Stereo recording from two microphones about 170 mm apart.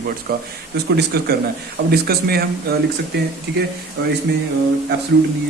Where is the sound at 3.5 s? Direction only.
70° right (ahead or behind).